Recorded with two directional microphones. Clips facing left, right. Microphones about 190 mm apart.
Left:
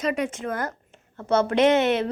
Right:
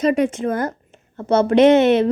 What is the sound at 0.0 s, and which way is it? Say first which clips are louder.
A woman's voice: right 8 dB; 30° right (ahead or behind).